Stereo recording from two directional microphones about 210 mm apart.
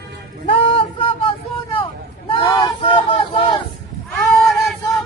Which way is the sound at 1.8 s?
25° left (ahead or behind).